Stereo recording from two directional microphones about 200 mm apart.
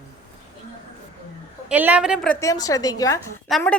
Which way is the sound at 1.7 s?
10° right (ahead or behind).